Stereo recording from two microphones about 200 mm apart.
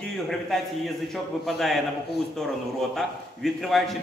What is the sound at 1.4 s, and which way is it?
Speech, centre (ahead or behind).